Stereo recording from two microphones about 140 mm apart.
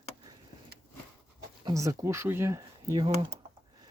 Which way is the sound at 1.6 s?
25° right (ahead or behind).